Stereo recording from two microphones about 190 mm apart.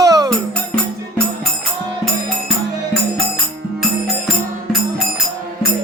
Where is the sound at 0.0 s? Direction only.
20° right (ahead or behind).